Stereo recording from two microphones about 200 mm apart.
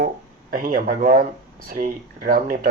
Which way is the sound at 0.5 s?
45° right (ahead or behind).